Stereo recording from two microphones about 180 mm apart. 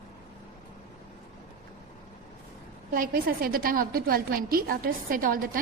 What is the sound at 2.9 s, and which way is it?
A woman's voice, 55° right (ahead or behind).